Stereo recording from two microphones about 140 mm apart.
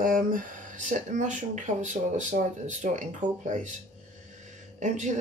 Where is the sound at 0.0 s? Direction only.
75° right (ahead or behind).